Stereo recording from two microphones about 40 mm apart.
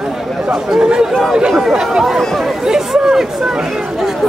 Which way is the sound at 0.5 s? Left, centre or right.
Centre.